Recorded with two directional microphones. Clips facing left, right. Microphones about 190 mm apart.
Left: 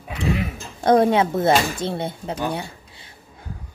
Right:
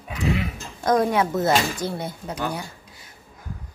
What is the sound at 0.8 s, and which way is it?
Speech, 30° left (ahead or behind).